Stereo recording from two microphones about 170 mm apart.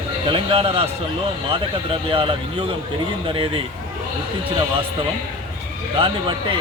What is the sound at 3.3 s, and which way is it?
Speech, 30° right (ahead or behind).